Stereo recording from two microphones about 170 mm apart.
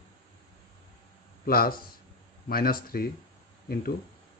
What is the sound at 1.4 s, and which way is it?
Speech, 60° left (ahead or behind).